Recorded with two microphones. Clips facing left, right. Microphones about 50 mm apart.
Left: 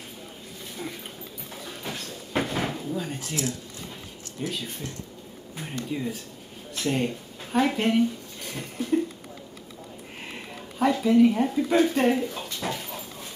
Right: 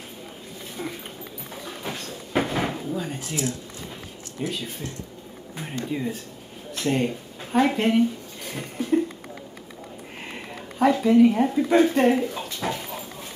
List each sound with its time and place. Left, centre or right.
1.7 s drawer open or close: centre
3.3 s speech: centre
5.9 s speech: centre
8.5 s a sound: centre
10.3 s speech: centre